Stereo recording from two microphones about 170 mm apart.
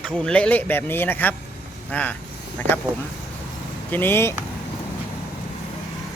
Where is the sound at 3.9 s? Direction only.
10° left (ahead or behind).